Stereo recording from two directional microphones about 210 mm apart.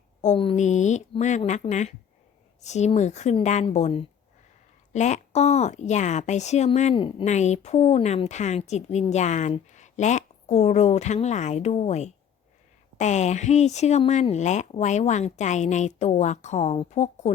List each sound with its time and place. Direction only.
0.2 s a woman's voice: 30° left (ahead or behind)